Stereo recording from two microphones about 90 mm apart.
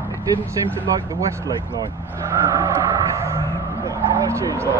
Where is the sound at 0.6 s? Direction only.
40° right (ahead or behind).